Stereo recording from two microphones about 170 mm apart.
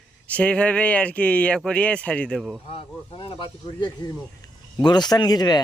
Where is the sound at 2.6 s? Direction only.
30° left (ahead or behind).